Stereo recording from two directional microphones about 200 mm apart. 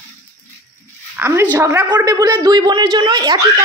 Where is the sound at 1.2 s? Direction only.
10° right (ahead or behind).